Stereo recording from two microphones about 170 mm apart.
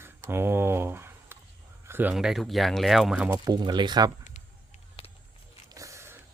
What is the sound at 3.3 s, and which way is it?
Speech, 25° right (ahead or behind).